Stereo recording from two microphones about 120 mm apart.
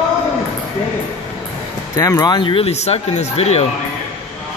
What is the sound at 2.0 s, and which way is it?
Speech, 30° left (ahead or behind).